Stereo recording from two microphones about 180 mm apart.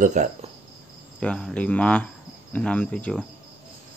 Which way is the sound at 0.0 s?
40° right (ahead or behind).